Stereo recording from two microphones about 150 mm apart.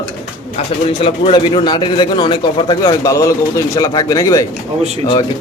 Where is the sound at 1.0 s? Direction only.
35° left (ahead or behind).